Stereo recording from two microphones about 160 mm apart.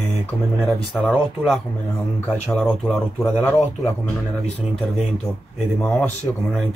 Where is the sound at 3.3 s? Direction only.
10° left (ahead or behind).